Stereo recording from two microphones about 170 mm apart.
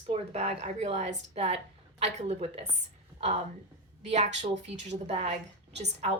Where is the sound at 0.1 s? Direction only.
35° right (ahead or behind).